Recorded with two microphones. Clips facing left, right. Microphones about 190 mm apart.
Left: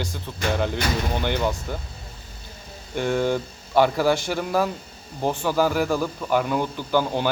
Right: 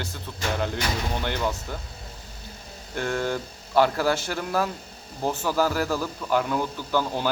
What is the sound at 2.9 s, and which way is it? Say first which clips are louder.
Speech: left 4 dB; centre (ahead or behind).